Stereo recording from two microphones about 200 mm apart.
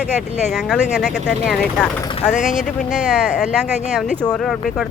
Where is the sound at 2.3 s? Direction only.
40° left (ahead or behind).